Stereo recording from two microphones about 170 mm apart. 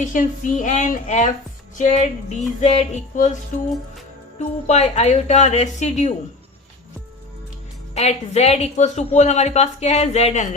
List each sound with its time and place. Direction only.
0.0 s speech: 50° left (ahead or behind)
4.4 s speech: 40° left (ahead or behind)
7.9 s a woman's voice: 40° left (ahead or behind)